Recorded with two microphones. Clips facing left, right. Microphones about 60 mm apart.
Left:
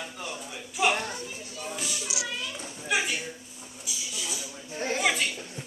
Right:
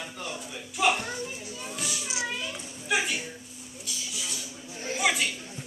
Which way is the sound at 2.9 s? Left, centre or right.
Centre.